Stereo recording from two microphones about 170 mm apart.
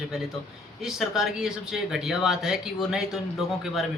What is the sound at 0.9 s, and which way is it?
Speech, centre (ahead or behind).